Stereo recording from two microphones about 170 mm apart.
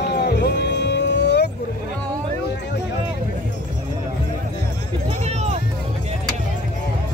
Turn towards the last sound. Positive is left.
turn(degrees=-40)  # may be behind; listen again after turning